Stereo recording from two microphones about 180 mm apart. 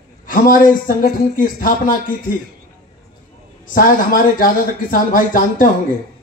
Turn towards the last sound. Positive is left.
turn(degrees=50)  # may be behind; listen again after turning